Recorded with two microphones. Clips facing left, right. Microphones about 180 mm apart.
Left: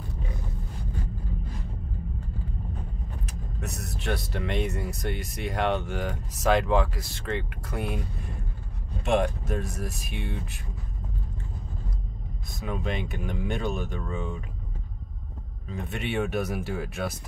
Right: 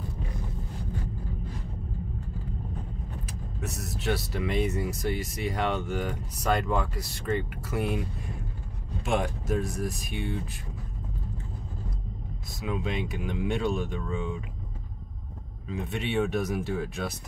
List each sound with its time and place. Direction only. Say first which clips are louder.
3.6 s speech: right 2 dB; centre (ahead or behind)
9.1 s speech: left 2 dB; centre (ahead or behind)
12.9 s speech: right 1 dB; centre (ahead or behind)
15.7 s speech: right 1 dB; centre (ahead or behind)